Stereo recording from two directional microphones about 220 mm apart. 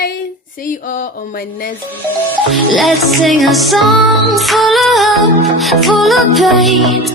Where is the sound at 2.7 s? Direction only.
Centre (ahead or behind).